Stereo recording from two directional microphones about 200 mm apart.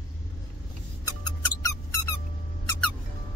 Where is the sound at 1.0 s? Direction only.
15° left (ahead or behind).